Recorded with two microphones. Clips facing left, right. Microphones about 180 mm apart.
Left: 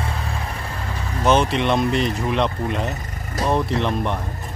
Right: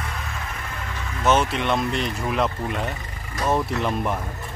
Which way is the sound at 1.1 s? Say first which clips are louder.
Left 2 dB; 35° left (ahead or behind).